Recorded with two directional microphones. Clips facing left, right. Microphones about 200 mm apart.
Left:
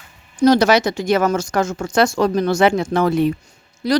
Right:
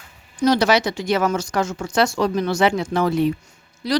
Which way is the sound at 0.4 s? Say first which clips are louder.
Left 4 dB; 45° left (ahead or behind).